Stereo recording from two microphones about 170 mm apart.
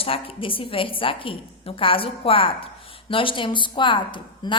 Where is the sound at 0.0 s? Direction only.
30° left (ahead or behind).